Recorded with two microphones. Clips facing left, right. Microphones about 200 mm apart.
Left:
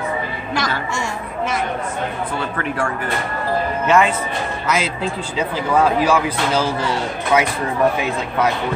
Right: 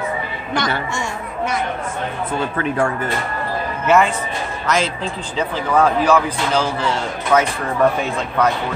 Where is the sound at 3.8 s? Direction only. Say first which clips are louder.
Right 1 dB; 5° right (ahead or behind).